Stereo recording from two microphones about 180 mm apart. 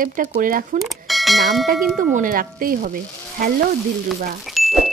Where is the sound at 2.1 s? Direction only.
50° right (ahead or behind).